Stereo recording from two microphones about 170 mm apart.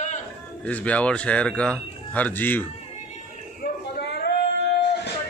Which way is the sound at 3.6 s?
80° left.